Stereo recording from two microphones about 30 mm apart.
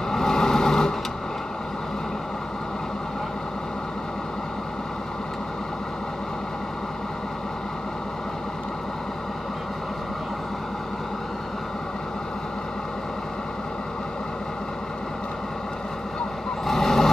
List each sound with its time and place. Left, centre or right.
0.1 s vehicle: centre
16.6 s vehicle: centre